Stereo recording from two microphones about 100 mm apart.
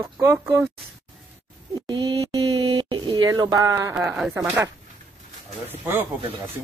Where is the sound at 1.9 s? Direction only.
55° right (ahead or behind).